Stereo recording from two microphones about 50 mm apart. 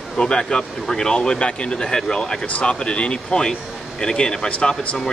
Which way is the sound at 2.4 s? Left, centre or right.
Left.